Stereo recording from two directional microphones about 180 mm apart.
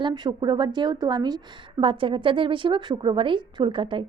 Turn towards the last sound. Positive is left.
turn(degrees=-25)  # may be behind; listen again after turning